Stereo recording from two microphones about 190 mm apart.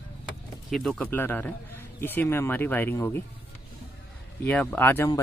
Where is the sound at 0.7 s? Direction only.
Centre (ahead or behind).